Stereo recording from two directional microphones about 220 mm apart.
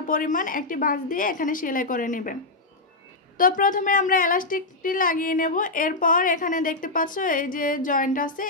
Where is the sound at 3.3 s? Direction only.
40° left (ahead or behind).